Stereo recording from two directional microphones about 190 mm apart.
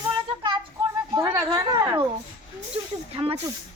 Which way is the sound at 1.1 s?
20° right (ahead or behind).